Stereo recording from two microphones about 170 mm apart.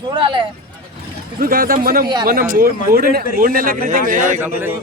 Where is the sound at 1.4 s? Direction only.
60° right (ahead or behind).